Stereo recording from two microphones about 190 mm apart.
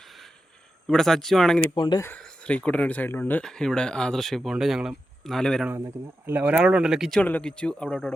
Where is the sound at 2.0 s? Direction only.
5° left (ahead or behind).